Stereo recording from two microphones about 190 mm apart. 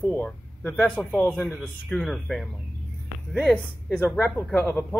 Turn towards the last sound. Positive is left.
turn(degrees=5)  # may be behind; listen again after turning